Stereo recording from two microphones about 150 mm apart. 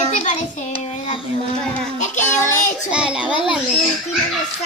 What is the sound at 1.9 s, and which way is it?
Child singing, 55° left (ahead or behind).